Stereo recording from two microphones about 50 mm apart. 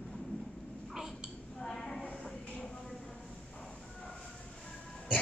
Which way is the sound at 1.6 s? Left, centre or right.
Centre.